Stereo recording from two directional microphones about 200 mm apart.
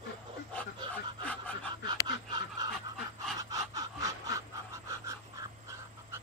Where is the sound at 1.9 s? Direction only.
20° right (ahead or behind).